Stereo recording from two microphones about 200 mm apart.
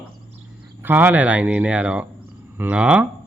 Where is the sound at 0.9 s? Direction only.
10° right (ahead or behind).